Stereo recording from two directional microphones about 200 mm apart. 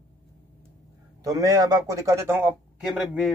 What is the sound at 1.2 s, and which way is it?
A man's voice, 15° right (ahead or behind).